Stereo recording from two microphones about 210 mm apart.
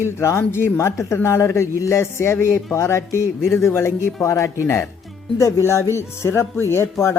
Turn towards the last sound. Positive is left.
turn(degrees=10)  # may be behind; listen again after turning